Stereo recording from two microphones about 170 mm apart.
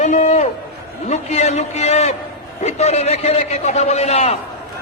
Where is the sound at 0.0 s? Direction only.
45° left (ahead or behind).